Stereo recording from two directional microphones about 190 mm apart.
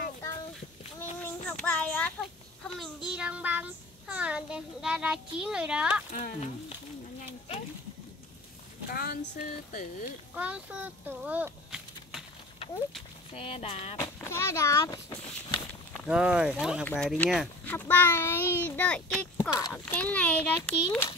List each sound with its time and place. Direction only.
1.2 s a child's voice: 5° left (ahead or behind)
6.1 s speech: 35° left (ahead or behind)
8.9 s speech: 55° left (ahead or behind)
10.0 s speech: 5° right (ahead or behind)
13.3 s speech: 30° left (ahead or behind)
14.0 s a sound: 15° left (ahead or behind)
16.1 s speech: 5° right (ahead or behind)
17.6 s a child's voice: 10° left (ahead or behind)
19.3 s a child's voice: 15° left (ahead or behind)